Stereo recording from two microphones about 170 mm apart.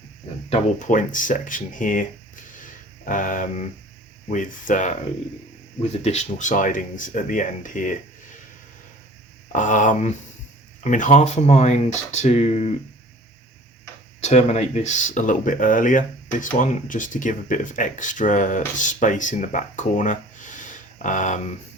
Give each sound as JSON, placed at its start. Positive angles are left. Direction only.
{"t": 0.5, "sound": "speech", "side_deg": 50}
{"t": 6.0, "sound": "speech", "side_deg": 40}
{"t": 9.5, "sound": "speech", "side_deg": 50}
{"t": 14.2, "sound": "speech", "side_deg": 40}